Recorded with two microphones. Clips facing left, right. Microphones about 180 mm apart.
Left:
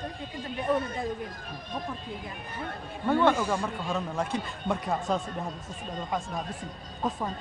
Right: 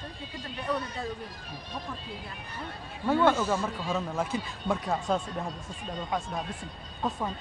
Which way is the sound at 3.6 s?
Centre (ahead or behind).